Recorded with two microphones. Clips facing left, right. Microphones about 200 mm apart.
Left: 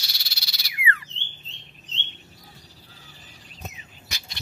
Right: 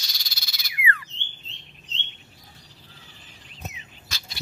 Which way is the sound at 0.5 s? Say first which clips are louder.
Even; 25° left (ahead or behind).